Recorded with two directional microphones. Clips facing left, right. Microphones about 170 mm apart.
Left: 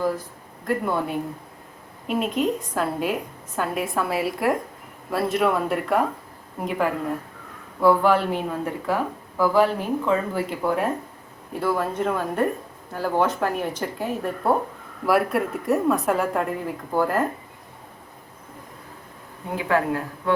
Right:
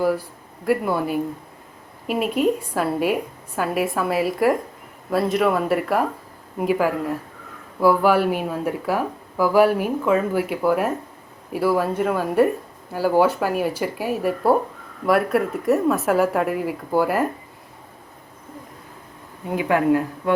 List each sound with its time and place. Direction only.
0.6 s a woman's voice: 5° right (ahead or behind)
19.5 s speech: 15° right (ahead or behind)